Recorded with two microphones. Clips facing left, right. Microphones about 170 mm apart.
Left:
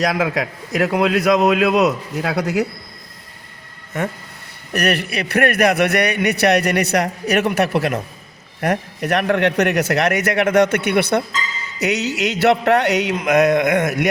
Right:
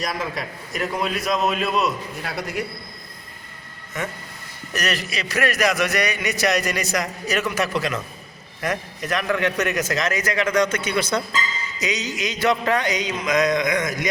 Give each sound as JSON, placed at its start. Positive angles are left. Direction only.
{"t": 0.0, "sound": "a man's voice", "side_deg": 75}
{"t": 4.7, "sound": "a man's voice", "side_deg": 60}